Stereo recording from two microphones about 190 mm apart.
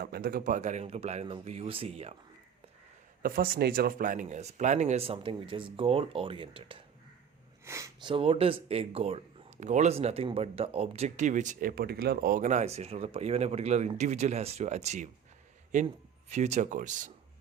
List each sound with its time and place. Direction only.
0.0 s speech: 55° right (ahead or behind); by 2.1 s 30° right (ahead or behind)
3.2 s speech: 50° right (ahead or behind); by 6.8 s 30° right (ahead or behind)
7.6 s speech: 15° right (ahead or behind)
8.1 s speech: 30° right (ahead or behind)